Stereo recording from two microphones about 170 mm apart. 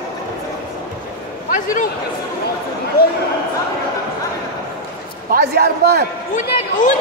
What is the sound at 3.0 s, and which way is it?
Speech, 60° left (ahead or behind).